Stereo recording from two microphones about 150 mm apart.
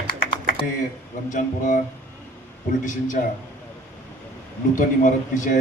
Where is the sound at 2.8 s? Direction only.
60° left (ahead or behind).